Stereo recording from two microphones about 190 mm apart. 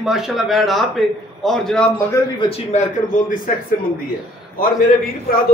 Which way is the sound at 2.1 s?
30° left (ahead or behind).